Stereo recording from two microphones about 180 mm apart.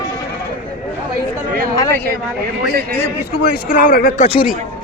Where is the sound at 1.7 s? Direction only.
15° left (ahead or behind).